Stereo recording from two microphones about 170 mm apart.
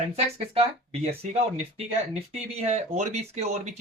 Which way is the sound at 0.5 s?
35° right (ahead or behind).